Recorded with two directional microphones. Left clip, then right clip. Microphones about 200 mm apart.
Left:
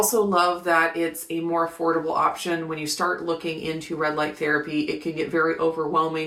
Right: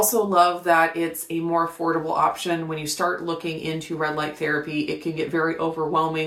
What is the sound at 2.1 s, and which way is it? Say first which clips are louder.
Speech: right 1 dB; 15° right (ahead or behind).